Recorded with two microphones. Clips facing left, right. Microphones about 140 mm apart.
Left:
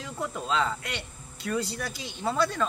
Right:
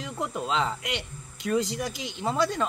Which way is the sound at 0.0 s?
20° right (ahead or behind).